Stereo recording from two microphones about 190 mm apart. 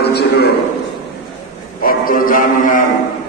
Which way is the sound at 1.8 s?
50° left (ahead or behind).